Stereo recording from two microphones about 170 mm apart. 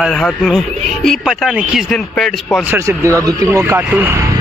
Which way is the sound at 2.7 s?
15° right (ahead or behind).